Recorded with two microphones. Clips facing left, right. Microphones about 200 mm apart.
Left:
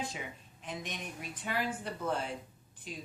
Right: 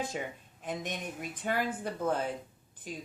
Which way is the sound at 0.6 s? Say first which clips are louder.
Right 5 dB; 50° right (ahead or behind).